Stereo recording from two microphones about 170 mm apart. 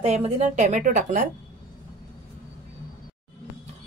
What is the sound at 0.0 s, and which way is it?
A woman's voice, 40° right (ahead or behind).